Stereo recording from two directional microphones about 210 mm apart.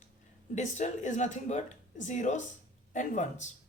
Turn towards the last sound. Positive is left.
turn(degrees=35)  # may be behind; listen again after turning